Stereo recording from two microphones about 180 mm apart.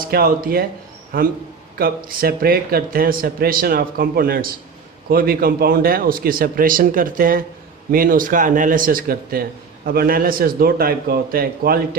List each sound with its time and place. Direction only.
0.1 s speech: 55° right (ahead or behind)
2.0 s a man's voice: 55° right (ahead or behind)